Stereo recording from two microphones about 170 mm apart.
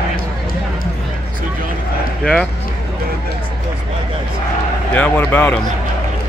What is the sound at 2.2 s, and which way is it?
Speech, centre (ahead or behind).